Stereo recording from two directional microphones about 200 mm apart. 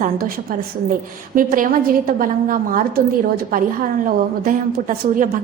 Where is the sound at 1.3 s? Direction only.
45° right (ahead or behind).